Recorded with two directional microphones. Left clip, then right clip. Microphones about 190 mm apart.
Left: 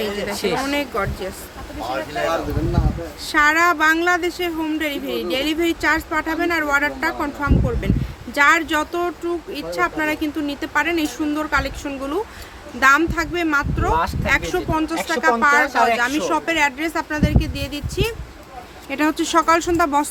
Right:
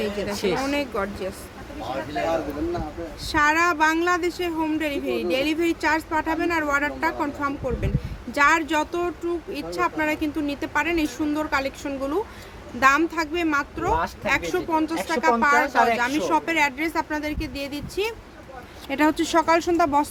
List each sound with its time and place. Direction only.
0.0 s speech: centre (ahead or behind)
2.1 s speech: 35° left (ahead or behind)
3.3 s speech: 10° left (ahead or behind)
18.9 s speech: 10° right (ahead or behind)